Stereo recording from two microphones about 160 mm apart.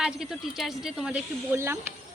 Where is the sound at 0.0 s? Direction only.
5° right (ahead or behind).